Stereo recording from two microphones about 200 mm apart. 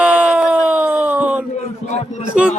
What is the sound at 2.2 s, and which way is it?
Speech, 5° right (ahead or behind).